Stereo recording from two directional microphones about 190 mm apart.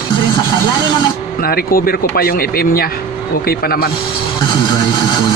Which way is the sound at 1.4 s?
50° left (ahead or behind).